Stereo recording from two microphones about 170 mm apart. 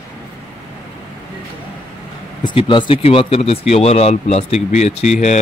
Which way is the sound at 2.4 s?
30° left (ahead or behind).